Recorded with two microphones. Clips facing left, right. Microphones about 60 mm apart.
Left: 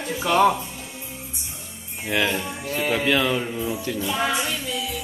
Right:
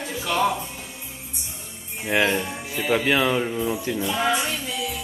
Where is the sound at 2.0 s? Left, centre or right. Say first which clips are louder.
Right 2 dB; centre.